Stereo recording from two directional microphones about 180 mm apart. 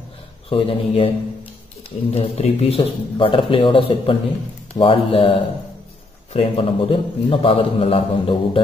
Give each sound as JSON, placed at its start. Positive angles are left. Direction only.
{"t": 0.5, "sound": "a man's voice", "side_deg": 30}
{"t": 2.0, "sound": "a man's voice", "side_deg": 35}